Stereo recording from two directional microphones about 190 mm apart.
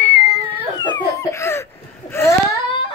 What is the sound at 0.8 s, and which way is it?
Laughter, 25° left (ahead or behind).